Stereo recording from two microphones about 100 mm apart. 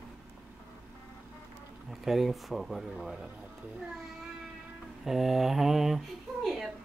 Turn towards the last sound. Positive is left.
turn(degrees=0)  # may be behind; listen again after turning